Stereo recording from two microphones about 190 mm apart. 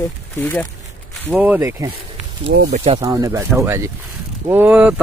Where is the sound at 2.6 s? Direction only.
35° right (ahead or behind).